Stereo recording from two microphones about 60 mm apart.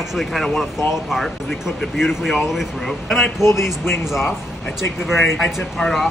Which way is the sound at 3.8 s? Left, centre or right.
Left.